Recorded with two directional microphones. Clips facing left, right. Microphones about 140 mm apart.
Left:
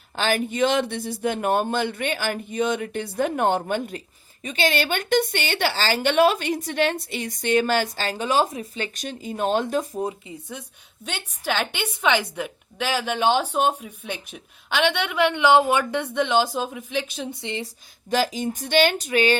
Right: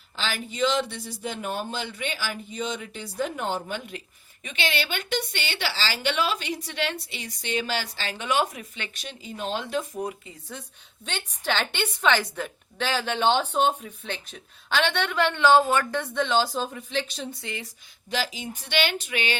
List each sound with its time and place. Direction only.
0.2 s a woman's voice: 55° left (ahead or behind)
10.0 s a woman's voice: 20° left (ahead or behind)
17.4 s a woman's voice: 25° left (ahead or behind)
18.1 s a woman's voice: 45° left (ahead or behind)